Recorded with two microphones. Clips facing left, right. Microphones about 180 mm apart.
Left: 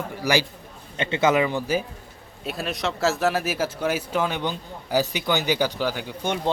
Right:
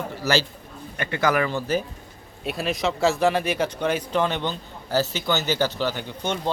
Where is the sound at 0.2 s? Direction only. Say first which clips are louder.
Left 1 dB; 15° left (ahead or behind).